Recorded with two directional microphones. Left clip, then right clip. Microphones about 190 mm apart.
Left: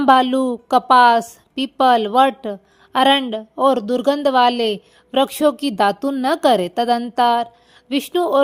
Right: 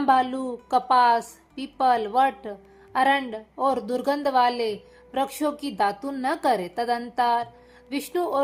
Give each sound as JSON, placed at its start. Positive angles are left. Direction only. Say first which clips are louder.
{"t": 0.0, "sound": "a woman's voice", "louder": "left 8 dB", "side_deg": 50}